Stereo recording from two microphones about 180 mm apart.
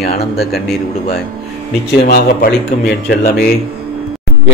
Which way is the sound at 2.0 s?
60° left (ahead or behind).